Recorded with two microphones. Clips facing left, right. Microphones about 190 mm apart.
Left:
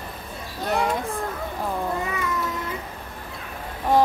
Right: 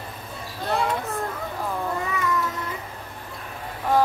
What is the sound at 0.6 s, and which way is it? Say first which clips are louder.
Speech: left 1 dB; 15° left (ahead or behind).